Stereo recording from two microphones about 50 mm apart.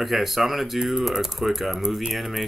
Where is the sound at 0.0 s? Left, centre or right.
Centre.